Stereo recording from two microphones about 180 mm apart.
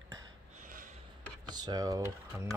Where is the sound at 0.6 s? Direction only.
50° right (ahead or behind).